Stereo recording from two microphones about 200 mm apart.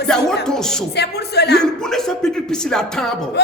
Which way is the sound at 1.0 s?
55° left (ahead or behind).